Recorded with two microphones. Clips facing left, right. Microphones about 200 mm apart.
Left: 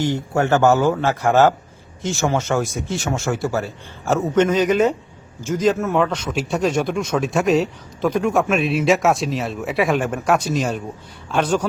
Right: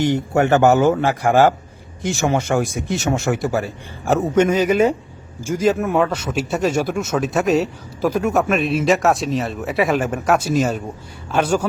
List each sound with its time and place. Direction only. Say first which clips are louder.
0.0 s speech: right 3 dB; 20° right (ahead or behind)